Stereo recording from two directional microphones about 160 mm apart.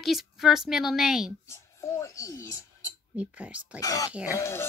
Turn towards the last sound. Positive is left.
turn(degrees=15)  # may be behind; listen again after turning